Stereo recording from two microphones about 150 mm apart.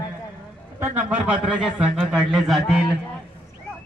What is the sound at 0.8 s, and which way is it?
A man's voice, 10° right (ahead or behind).